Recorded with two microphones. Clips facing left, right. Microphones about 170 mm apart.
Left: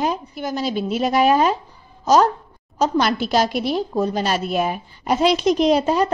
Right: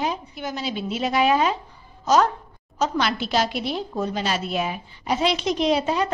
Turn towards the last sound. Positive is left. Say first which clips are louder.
# left 4 dB
turn(degrees=40)  # may be behind; listen again after turning